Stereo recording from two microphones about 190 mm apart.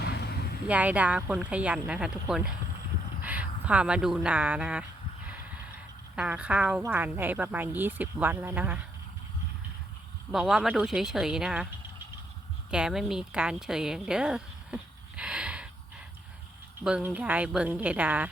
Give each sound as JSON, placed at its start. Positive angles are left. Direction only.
{"t": 0.0, "sound": "vehicle", "side_deg": 60}
{"t": 0.7, "sound": "a woman's voice", "side_deg": -5}
{"t": 6.1, "sound": "a woman's voice", "side_deg": -5}
{"t": 10.3, "sound": "speech", "side_deg": 0}
{"t": 12.7, "sound": "a woman's voice", "side_deg": -5}
{"t": 16.8, "sound": "a woman's voice", "side_deg": -5}